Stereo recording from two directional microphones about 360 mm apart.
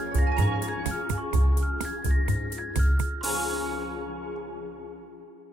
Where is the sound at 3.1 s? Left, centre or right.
Centre.